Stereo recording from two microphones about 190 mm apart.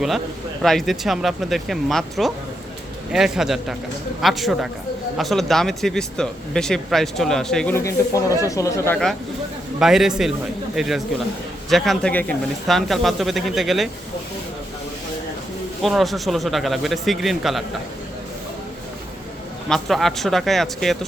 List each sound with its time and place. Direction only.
0.6 s speech: centre (ahead or behind)
8.4 s speech: 15° left (ahead or behind)
9.8 s speech: centre (ahead or behind)
15.8 s speech: centre (ahead or behind)
19.6 s speech: centre (ahead or behind)